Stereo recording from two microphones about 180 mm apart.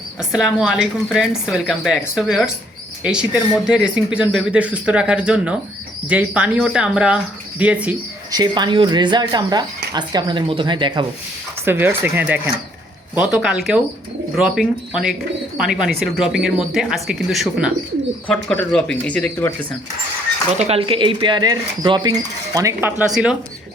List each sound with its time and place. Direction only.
0.2 s a woman's voice: centre (ahead or behind)
8.3 s speech: 25° right (ahead or behind)
11.6 s a woman's voice: 10° right (ahead or behind); by 19.5 s 10° left (ahead or behind)
20.6 s speech: 35° right (ahead or behind); by 23.4 s 5° right (ahead or behind)